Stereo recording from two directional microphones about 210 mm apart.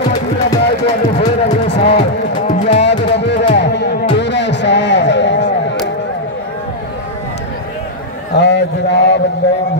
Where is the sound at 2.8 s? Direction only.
55° left (ahead or behind).